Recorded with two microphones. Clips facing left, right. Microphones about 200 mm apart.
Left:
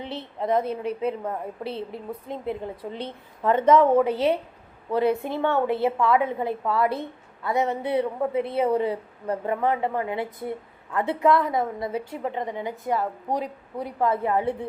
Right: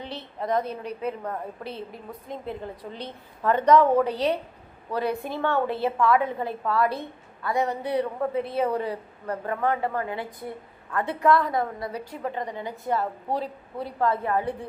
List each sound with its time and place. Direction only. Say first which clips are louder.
0.0 s a woman's voice: left 3 dB; 25° left (ahead or behind)